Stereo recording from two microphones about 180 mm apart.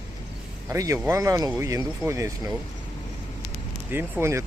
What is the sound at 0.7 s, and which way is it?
Speech, 15° right (ahead or behind).